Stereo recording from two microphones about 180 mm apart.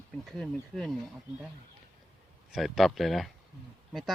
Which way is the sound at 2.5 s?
Centre (ahead or behind).